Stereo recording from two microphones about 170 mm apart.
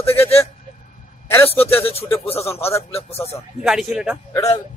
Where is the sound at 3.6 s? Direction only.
5° right (ahead or behind).